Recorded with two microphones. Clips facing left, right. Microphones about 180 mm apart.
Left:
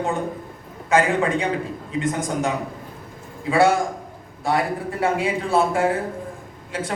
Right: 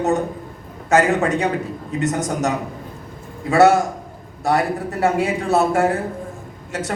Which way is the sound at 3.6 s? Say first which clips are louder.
Right 4 dB; 75° right (ahead or behind).